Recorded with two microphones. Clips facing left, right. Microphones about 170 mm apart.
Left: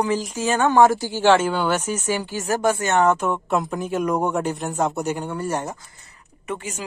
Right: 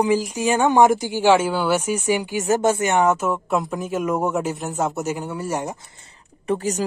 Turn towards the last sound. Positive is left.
turn(degrees=-35)  # may be behind; listen again after turning